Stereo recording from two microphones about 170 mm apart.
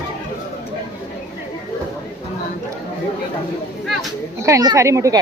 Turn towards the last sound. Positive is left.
turn(degrees=-15)  # may be behind; listen again after turning